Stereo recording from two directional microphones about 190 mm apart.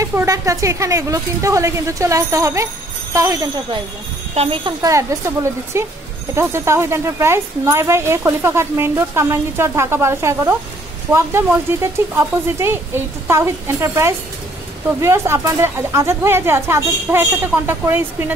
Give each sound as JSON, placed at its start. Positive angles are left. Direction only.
{"t": 0.0, "sound": "speech", "side_deg": -15}